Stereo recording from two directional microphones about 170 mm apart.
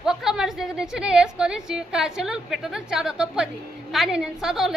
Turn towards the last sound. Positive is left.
turn(degrees=0)  # may be behind; listen again after turning